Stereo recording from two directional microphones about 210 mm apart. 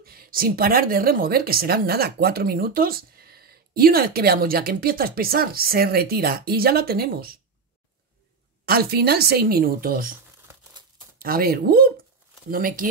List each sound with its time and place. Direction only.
0.0 s a woman's voice: 45° right (ahead or behind)
8.6 s a woman's voice: 45° right (ahead or behind)
11.1 s a woman's voice: 45° right (ahead or behind)